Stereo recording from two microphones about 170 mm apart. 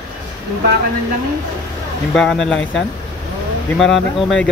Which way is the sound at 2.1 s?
5° left (ahead or behind).